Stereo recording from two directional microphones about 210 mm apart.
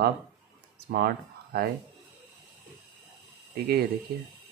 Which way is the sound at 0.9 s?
45° right (ahead or behind).